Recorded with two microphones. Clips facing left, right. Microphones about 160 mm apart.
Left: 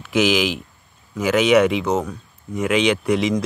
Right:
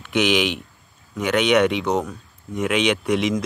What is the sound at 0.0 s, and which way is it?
Speech, centre (ahead or behind).